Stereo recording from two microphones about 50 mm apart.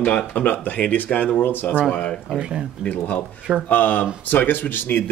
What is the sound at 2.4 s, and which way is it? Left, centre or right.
Speech, centre.